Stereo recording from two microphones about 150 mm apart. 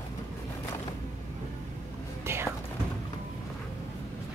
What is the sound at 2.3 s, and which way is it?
Whispering, 15° right (ahead or behind).